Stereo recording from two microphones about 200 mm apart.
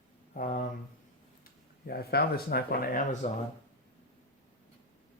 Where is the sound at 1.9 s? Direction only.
50° left (ahead or behind).